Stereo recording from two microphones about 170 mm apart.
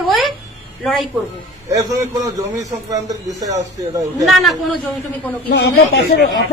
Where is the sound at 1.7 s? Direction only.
20° right (ahead or behind).